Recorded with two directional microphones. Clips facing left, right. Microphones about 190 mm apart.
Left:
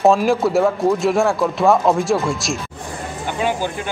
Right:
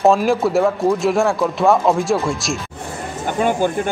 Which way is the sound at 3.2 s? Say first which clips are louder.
Right 4 dB; 50° right (ahead or behind).